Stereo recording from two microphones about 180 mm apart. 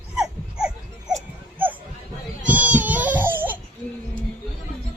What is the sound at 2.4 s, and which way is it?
Baby cry, 10° right (ahead or behind).